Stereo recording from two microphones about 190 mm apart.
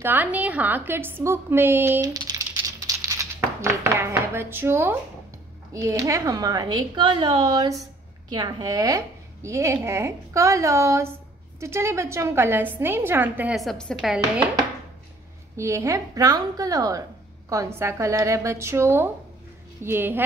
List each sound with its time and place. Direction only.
0.0 s a woman's voice: 10° right (ahead or behind)
15.5 s speech: 15° right (ahead or behind)